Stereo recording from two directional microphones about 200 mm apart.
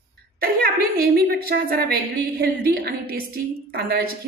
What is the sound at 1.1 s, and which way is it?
Speech, 50° right (ahead or behind).